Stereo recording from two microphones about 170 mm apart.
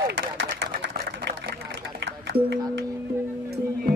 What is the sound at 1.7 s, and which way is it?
Music, 90° right.